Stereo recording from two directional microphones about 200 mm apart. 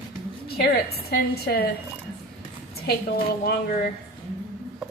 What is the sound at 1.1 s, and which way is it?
Speech, 50° left (ahead or behind).